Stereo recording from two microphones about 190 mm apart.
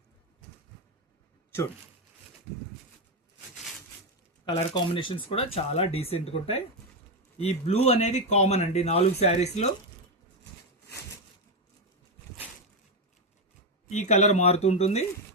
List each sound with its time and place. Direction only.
4.4 s speech: 25° left (ahead or behind)
13.9 s speech: 40° left (ahead or behind)